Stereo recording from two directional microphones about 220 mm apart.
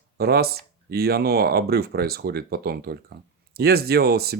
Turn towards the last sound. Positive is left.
turn(degrees=-45)  # may be behind; listen again after turning